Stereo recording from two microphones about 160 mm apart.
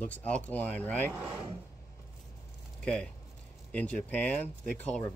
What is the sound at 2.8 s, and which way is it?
Speech, 5° left (ahead or behind).